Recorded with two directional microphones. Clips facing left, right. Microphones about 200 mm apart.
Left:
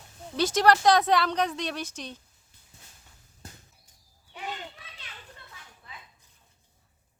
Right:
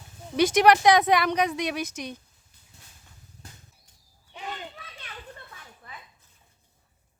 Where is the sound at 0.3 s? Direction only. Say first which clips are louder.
Right 3 dB; 15° right (ahead or behind).